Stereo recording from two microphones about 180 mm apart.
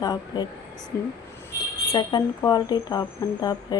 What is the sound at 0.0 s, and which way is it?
Speech, 20° left (ahead or behind).